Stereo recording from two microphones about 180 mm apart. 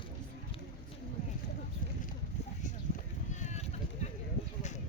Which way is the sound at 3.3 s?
40° left (ahead or behind).